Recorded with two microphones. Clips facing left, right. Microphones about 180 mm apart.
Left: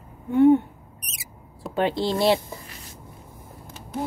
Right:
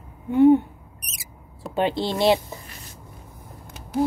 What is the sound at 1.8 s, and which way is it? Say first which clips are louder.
Speech: even; 25° right (ahead or behind).